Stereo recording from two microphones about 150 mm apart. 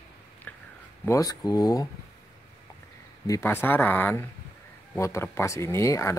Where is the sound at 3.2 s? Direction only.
20° left (ahead or behind).